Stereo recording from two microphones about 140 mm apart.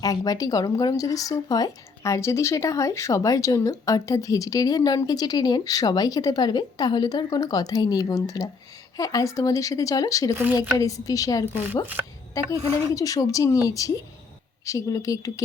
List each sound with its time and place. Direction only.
0.0 s speech: 25° left (ahead or behind)
11.5 s speech: 15° right (ahead or behind)
12.4 s speech: 25° left (ahead or behind)